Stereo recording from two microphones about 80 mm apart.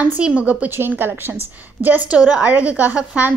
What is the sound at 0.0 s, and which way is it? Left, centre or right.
A woman's voice, centre.